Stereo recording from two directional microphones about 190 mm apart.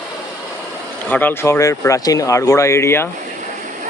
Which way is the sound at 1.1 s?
10° left (ahead or behind).